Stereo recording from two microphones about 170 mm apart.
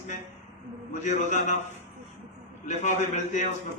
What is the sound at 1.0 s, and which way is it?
Speech, 45° left (ahead or behind).